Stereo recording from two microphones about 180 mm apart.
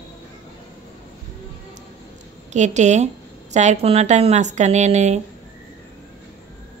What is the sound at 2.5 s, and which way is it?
A woman's voice, 40° right (ahead or behind).